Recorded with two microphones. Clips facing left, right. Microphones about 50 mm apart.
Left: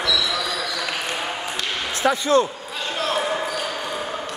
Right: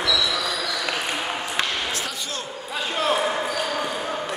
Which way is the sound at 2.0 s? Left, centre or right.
Left.